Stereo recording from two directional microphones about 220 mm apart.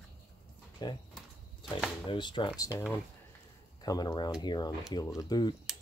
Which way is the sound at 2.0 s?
20° left (ahead or behind).